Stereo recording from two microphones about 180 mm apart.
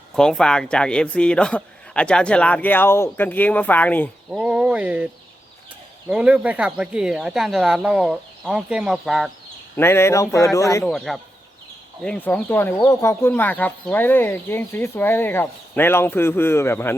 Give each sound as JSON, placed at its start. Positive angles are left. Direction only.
{"t": 0.2, "sound": "speech", "side_deg": 5}
{"t": 4.3, "sound": "speech", "side_deg": -5}
{"t": 6.1, "sound": "speech", "side_deg": -5}
{"t": 9.7, "sound": "speech", "side_deg": 15}
{"t": 10.8, "sound": "speech", "side_deg": 0}